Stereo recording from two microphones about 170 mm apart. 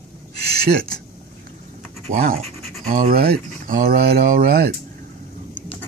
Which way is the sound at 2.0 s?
55° right (ahead or behind).